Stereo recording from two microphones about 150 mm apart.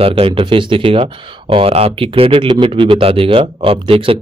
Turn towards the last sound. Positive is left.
turn(degrees=-40)  # may be behind; listen again after turning